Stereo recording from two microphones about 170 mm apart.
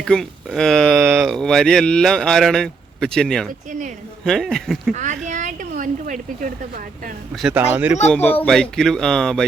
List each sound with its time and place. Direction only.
0.0 s speech: 5° left (ahead or behind)
1.0 s speech: 15° right (ahead or behind)
1.3 s speech: 5° left (ahead or behind)
3.7 s speech: 45° right (ahead or behind)
4.3 s speech: centre (ahead or behind)
4.9 s a woman's voice: 45° right (ahead or behind)
7.4 s speech: 10° right (ahead or behind)
8.1 s speech: 10° left (ahead or behind)